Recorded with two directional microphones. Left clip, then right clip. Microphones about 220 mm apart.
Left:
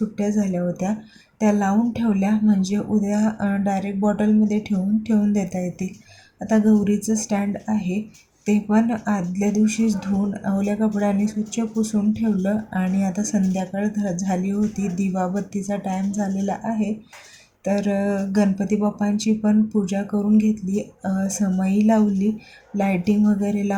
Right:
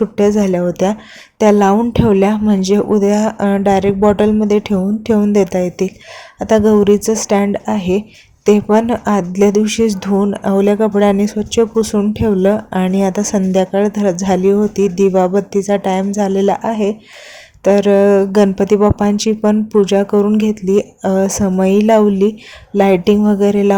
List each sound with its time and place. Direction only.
0.2 s speech: 40° right (ahead or behind)